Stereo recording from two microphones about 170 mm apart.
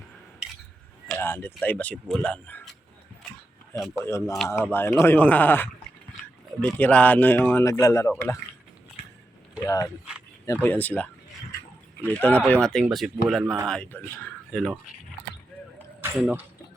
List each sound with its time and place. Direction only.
1.0 s speech: 10° left (ahead or behind)
3.9 s speech: 15° left (ahead or behind)
9.6 s speech: 20° left (ahead or behind)
12.1 s speech: 5° left (ahead or behind)
16.0 s a sound: 15° right (ahead or behind)